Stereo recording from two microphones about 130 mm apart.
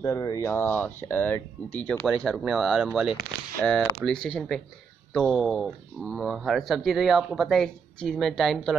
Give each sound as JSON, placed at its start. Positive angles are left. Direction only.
{"t": 0.0, "sound": "speech", "side_deg": 25}